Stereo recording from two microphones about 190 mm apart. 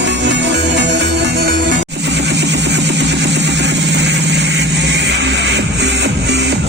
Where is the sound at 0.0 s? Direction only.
65° right (ahead or behind).